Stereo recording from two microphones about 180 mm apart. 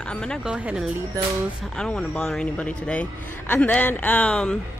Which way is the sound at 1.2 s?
20° right (ahead or behind).